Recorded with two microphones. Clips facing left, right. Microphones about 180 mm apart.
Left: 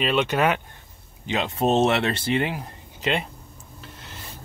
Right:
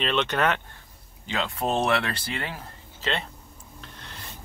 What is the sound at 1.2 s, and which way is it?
Speech, 20° left (ahead or behind).